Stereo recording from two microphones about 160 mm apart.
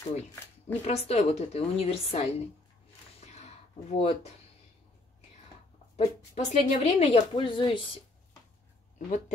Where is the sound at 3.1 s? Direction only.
40° left (ahead or behind).